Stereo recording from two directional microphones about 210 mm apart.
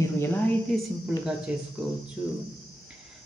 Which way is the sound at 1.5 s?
5° right (ahead or behind).